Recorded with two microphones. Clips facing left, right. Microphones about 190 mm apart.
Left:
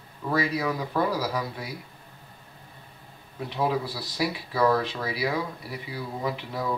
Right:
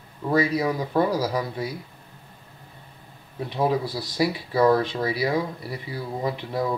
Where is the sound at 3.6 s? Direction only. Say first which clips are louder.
Right 3 dB; 25° right (ahead or behind).